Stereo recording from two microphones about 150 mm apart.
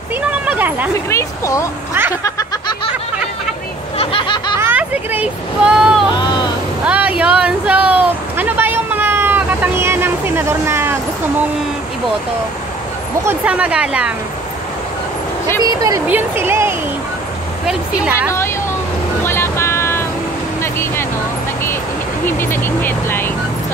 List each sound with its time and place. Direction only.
0.5 s speech: 10° right (ahead or behind)
1.1 s speech: 20° left (ahead or behind)
4.0 s snicker: 35° left (ahead or behind)
4.6 s speech: 15° right (ahead or behind)
6.8 s a sound: 10° right (ahead or behind)
13.2 s speech: 10° right (ahead or behind)
15.6 s a woman's voice: 25° right (ahead or behind)
19.2 s vehicle: 15° left (ahead or behind)
22.2 s speech: 15° left (ahead or behind)